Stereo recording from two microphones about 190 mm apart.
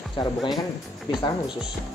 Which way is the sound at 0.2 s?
25° left (ahead or behind).